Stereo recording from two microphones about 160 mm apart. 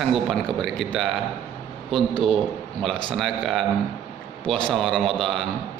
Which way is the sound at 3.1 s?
Centre (ahead or behind).